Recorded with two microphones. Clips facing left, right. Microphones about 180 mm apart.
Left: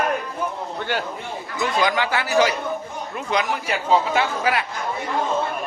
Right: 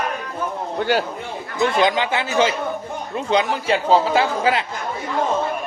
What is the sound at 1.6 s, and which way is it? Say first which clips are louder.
Speech: right 3 dB; 20° right (ahead or behind).